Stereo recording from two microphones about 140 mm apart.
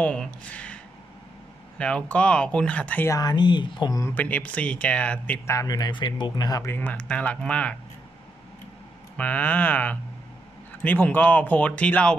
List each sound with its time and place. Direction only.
0.0 s speech: 10° left (ahead or behind)
1.8 s speech: 5° left (ahead or behind)
3.1 s speech: 30° left (ahead or behind)
4.0 s speech: 10° left (ahead or behind)
9.1 s speech: 10° left (ahead or behind)